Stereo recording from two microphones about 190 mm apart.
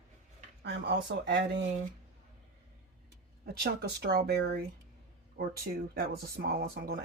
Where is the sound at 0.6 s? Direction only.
65° right (ahead or behind).